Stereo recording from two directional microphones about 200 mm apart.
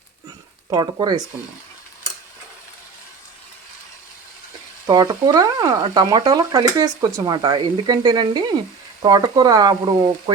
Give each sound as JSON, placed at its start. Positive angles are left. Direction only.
{"t": 0.7, "sound": "speech", "side_deg": -20}
{"t": 4.9, "sound": "speech", "side_deg": -20}